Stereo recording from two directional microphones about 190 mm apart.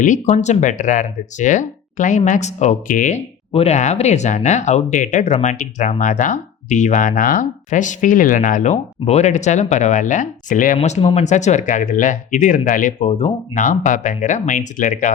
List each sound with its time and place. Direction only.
0.0 s speech: 40° left (ahead or behind)
3.5 s speech: 35° left (ahead or behind)